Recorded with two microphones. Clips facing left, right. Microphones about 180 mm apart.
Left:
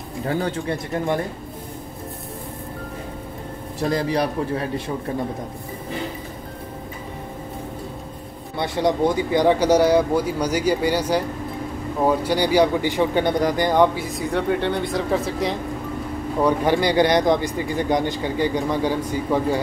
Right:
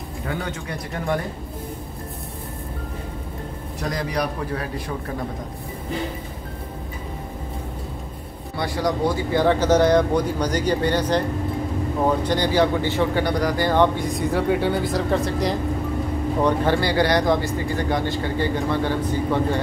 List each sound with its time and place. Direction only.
0.3 s speech: 35° left (ahead or behind)
3.9 s a man's voice: 30° left (ahead or behind)
8.5 s speech: 25° left (ahead or behind); by 15.5 s centre (ahead or behind)
16.4 s speech: 15° left (ahead or behind)